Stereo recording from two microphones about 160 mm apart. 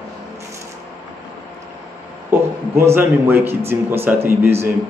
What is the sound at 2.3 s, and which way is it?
A man's voice, 15° right (ahead or behind).